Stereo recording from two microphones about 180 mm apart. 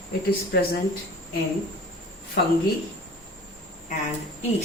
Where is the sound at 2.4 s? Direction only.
70° left (ahead or behind).